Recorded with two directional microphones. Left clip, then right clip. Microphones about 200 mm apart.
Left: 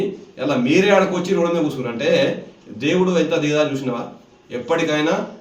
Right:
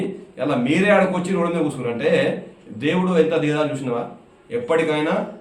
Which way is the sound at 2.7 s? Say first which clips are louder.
Left 1 dB; 15° right (ahead or behind).